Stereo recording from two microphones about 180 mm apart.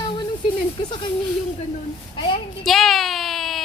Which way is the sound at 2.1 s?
30° left (ahead or behind).